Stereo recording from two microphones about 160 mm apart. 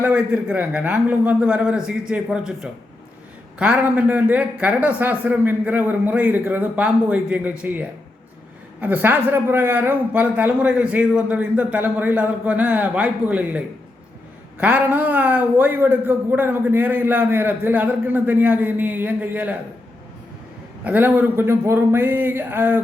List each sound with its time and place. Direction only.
0.0 s a man's voice: 5° right (ahead or behind)
14.6 s a man's voice: 10° right (ahead or behind)
20.8 s a man's voice: 10° right (ahead or behind)